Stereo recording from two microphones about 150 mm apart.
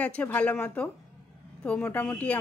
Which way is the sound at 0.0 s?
10° left (ahead or behind).